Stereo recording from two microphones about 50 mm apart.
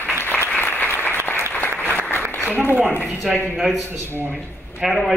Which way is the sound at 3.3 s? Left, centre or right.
Centre.